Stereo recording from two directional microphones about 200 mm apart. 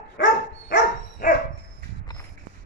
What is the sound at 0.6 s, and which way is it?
Dog, 45° left (ahead or behind).